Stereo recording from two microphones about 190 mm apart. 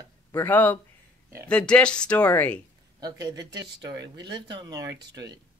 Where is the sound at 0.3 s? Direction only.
10° left (ahead or behind).